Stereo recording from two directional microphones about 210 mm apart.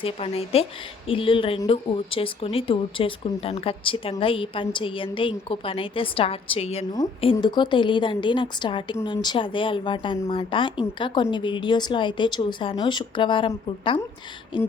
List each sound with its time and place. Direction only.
0.0 s a woman's voice: 25° left (ahead or behind)